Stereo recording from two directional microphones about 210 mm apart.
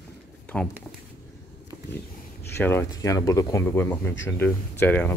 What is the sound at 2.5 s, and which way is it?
Speech, 10° left (ahead or behind).